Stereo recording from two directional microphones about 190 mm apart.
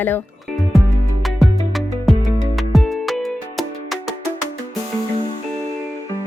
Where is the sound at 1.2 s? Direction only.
Centre (ahead or behind).